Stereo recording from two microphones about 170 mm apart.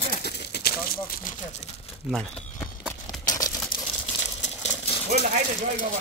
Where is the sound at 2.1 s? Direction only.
Centre (ahead or behind).